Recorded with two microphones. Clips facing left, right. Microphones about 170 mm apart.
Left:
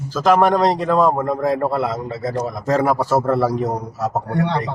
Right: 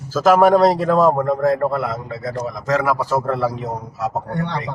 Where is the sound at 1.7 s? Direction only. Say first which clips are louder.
Left 2 dB; 25° left (ahead or behind).